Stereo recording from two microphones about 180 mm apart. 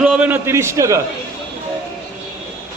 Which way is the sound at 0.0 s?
5° right (ahead or behind).